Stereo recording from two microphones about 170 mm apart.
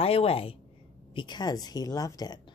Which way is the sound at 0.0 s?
35° left (ahead or behind).